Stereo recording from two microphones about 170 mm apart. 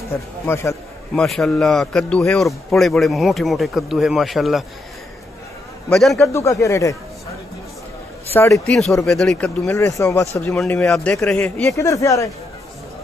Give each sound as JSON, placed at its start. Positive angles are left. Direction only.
{"t": 0.1, "sound": "speech", "side_deg": 15}
{"t": 1.1, "sound": "speech", "side_deg": 0}
{"t": 5.9, "sound": "speech", "side_deg": 5}
{"t": 6.3, "sound": "speech", "side_deg": 20}
{"t": 8.3, "sound": "speech", "side_deg": 15}
{"t": 8.6, "sound": "speech", "side_deg": 5}
{"t": 9.7, "sound": "speech", "side_deg": 15}
{"t": 10.3, "sound": "speech", "side_deg": 5}
{"t": 11.7, "sound": "speech", "side_deg": 20}